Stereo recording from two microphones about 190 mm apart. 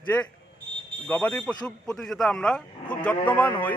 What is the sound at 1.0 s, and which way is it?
A man's voice, 10° left (ahead or behind).